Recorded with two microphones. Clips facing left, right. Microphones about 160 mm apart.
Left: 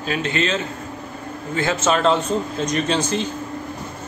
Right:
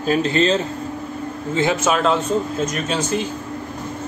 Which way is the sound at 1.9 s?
5° right (ahead or behind).